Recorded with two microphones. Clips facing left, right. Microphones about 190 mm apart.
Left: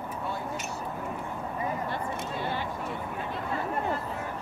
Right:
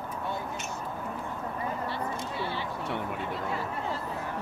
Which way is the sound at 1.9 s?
50° left (ahead or behind).